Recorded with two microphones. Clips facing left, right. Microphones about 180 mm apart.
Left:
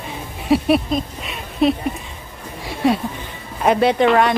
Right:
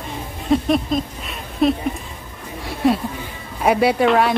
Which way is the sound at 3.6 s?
5° right (ahead or behind).